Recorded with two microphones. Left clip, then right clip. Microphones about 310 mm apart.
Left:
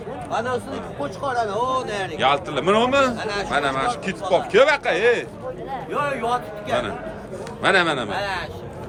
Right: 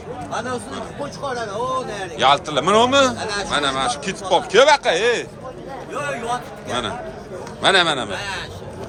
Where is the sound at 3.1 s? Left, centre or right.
Left.